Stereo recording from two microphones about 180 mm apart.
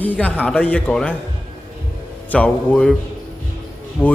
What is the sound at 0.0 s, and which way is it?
Speech, 10° left (ahead or behind).